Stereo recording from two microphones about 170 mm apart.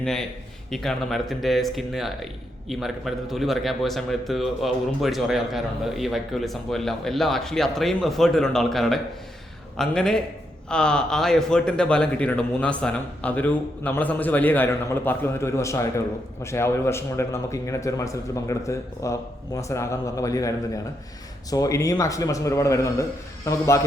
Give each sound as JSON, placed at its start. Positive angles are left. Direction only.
{"t": 0.0, "sound": "a man's voice", "side_deg": 5}
{"t": 21.5, "sound": "a man's voice", "side_deg": 20}